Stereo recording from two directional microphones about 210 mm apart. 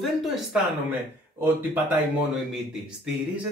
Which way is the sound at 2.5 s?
5° right (ahead or behind).